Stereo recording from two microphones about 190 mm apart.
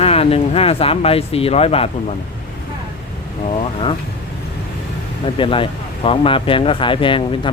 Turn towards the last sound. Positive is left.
turn(degrees=25)  # may be behind; listen again after turning